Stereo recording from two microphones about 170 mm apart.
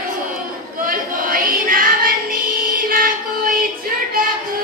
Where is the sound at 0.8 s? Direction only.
55° right (ahead or behind).